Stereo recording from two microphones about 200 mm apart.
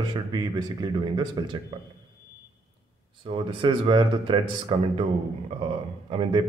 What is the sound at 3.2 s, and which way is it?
Speech, 25° right (ahead or behind).